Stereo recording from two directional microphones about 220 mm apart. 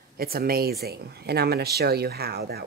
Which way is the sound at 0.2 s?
45° right (ahead or behind).